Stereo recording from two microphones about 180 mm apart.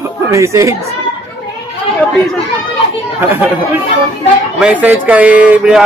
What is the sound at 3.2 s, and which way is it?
Speech, 10° right (ahead or behind).